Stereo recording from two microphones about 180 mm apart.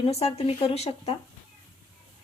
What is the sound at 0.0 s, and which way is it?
Speech, 35° left (ahead or behind).